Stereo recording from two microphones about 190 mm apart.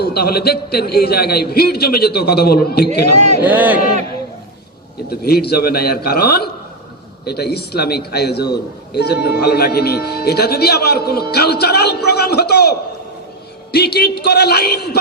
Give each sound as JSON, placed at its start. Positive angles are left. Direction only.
{"t": 0.0, "sound": "speech", "side_deg": 55}
{"t": 3.1, "sound": "speech", "side_deg": -35}
{"t": 3.4, "sound": "speech", "side_deg": -10}
{"t": 5.0, "sound": "speech", "side_deg": 55}